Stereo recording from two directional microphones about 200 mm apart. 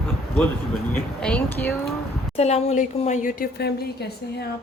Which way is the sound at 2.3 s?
35° left (ahead or behind).